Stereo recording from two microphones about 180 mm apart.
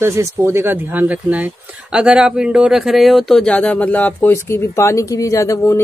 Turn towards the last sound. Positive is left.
turn(degrees=15)  # may be behind; listen again after turning